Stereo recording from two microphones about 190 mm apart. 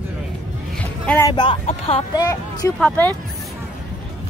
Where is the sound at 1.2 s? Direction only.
25° left (ahead or behind).